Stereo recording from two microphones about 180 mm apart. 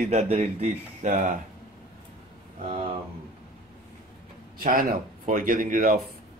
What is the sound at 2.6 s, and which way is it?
Speech, 30° right (ahead or behind).